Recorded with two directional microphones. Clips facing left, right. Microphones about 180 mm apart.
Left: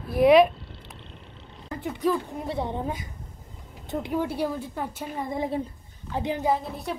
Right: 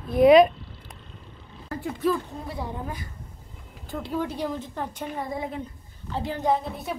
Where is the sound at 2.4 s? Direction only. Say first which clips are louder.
Left 4 dB; 25° left (ahead or behind); by 5.0 s 10° left (ahead or behind).